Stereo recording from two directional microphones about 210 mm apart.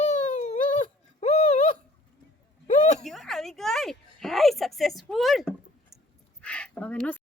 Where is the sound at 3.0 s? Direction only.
Centre (ahead or behind).